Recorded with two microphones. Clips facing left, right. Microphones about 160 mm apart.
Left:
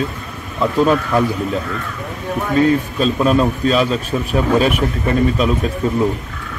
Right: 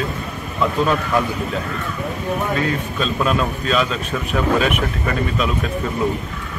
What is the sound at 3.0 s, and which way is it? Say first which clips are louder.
A man's voice: left 5 dB; 35° left (ahead or behind).